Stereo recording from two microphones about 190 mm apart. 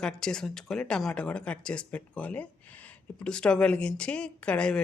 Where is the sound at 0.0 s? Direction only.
5° left (ahead or behind).